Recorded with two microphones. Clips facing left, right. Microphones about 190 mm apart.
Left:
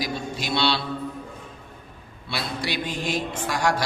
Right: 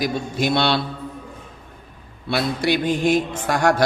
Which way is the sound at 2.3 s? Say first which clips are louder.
Right 9 dB; 55° right (ahead or behind).